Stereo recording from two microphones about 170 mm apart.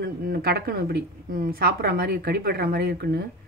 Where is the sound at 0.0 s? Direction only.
65° right (ahead or behind).